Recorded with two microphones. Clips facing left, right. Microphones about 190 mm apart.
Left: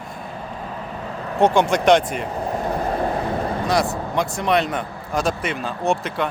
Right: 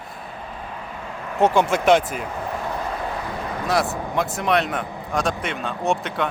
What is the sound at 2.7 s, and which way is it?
Vehicle, 40° left (ahead or behind).